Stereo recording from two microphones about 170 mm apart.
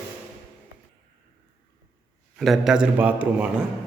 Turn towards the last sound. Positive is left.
turn(degrees=-10)  # may be behind; listen again after turning